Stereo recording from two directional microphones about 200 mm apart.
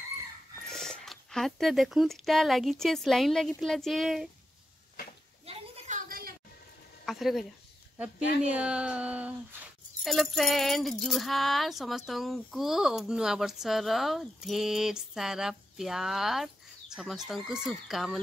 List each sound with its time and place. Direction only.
0.7 s speech: centre (ahead or behind)
5.4 s a sound: 30° right (ahead or behind); by 6.3 s 45° right (ahead or behind)
7.1 s speech: centre (ahead or behind)